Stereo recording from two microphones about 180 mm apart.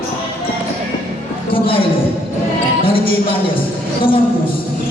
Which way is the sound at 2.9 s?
30° left (ahead or behind).